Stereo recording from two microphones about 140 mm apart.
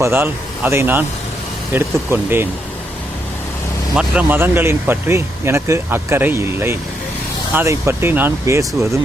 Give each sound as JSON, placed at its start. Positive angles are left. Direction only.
{"t": 0.0, "sound": "speech", "side_deg": -15}
{"t": 3.9, "sound": "speech", "side_deg": -10}